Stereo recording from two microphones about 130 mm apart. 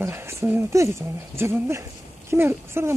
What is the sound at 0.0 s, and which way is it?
Speech, 20° right (ahead or behind).